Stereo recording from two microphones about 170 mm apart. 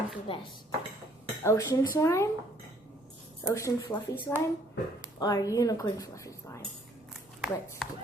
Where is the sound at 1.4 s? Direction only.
20° left (ahead or behind).